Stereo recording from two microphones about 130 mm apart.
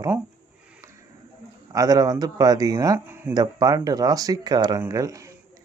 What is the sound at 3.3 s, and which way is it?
Speech, 30° right (ahead or behind).